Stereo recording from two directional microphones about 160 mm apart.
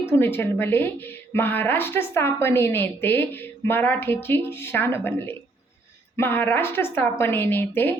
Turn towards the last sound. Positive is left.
turn(degrees=15)  # may be behind; listen again after turning